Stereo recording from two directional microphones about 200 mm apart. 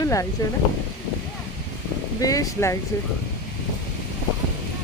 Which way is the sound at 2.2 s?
15° left (ahead or behind).